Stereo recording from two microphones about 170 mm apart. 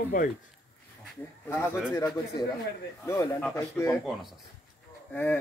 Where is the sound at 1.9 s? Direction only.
10° left (ahead or behind).